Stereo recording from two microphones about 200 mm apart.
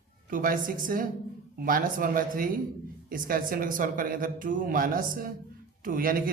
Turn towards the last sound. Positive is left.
turn(degrees=-45)  # may be behind; listen again after turning